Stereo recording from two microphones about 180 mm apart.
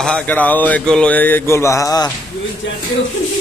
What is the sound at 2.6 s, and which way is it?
Speech, 90° left.